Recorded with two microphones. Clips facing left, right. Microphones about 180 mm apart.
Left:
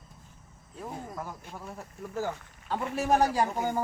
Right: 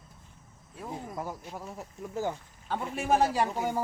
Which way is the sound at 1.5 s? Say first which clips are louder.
Right 1 dB; 15° right (ahead or behind).